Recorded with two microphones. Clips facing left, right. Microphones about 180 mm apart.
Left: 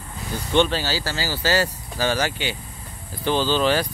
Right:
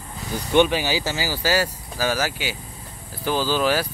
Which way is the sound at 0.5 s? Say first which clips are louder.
Right 2 dB; 15° right (ahead or behind).